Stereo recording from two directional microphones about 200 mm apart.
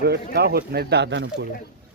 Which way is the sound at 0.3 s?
50° right (ahead or behind).